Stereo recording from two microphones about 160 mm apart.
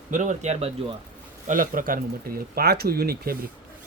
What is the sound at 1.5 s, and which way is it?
Speech, 55° right (ahead or behind).